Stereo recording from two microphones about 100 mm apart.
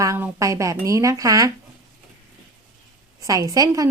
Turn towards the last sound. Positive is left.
turn(degrees=-35)  # may be behind; listen again after turning